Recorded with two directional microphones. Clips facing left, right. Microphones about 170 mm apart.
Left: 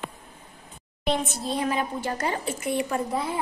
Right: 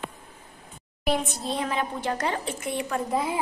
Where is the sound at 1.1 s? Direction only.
Centre (ahead or behind).